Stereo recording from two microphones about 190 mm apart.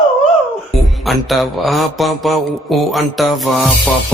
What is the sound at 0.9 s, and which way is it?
Mantra, centre (ahead or behind).